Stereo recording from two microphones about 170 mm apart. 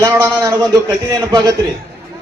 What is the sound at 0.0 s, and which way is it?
A man's voice, 15° right (ahead or behind).